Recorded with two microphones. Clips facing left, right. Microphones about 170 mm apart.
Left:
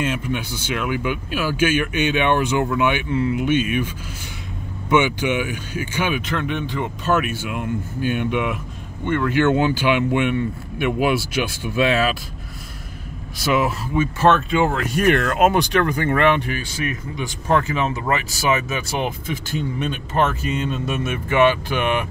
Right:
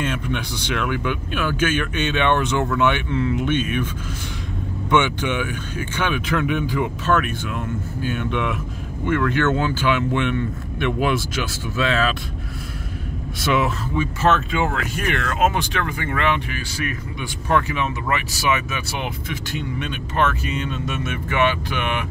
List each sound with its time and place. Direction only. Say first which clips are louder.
0.0 s speech: left 1 dB; 5° left (ahead or behind)
6.2 s speech: right 3 dB; 5° right (ahead or behind)
7.1 s speech: left 3 dB; 10° left (ahead or behind)
9.0 s speech: even; centre (ahead or behind)
9.3 s speech: left 3 dB; 15° left (ahead or behind)
13.4 s speech: left 1 dB; centre (ahead or behind)
14.0 s speech: left 4 dB; 20° left (ahead or behind)
15.0 s speech: left 6 dB; 45° left (ahead or behind)
17.5 s speech: left 1 dB; 30° left (ahead or behind)
18.9 s speech: left 4 dB; 40° left (ahead or behind)